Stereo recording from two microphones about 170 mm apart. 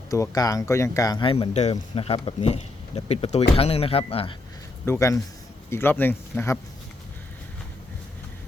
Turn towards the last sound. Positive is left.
turn(degrees=15)  # may be behind; listen again after turning